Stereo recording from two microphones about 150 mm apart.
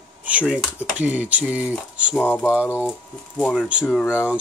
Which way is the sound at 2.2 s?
10° left (ahead or behind).